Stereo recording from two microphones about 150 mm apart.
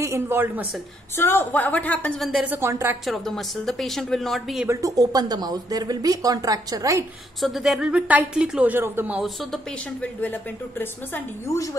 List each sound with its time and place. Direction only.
0.0 s a woman's voice: 15° right (ahead or behind)
1.1 s a woman's voice: 15° left (ahead or behind); by 2.4 s centre (ahead or behind)
2.4 s speech: 15° right (ahead or behind)
3.1 s speech: centre (ahead or behind)
4.6 s speech: 25° right (ahead or behind)
7.4 s speech: centre (ahead or behind)
9.2 s speech: centre (ahead or behind)
10.2 s a woman's voice: 15° left (ahead or behind)